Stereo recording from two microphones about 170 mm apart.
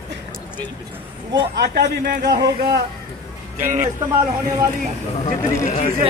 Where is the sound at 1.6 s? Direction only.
65° right (ahead or behind).